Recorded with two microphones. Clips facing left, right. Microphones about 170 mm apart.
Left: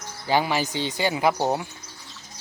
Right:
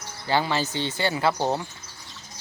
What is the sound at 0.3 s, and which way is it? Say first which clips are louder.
Speech: left 1 dB; 15° left (ahead or behind).